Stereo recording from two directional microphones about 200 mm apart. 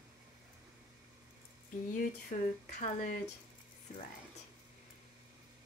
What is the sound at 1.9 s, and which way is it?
Speech, 40° left (ahead or behind).